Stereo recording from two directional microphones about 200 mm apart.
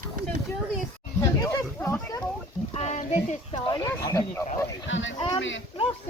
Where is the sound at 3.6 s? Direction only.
20° left (ahead or behind).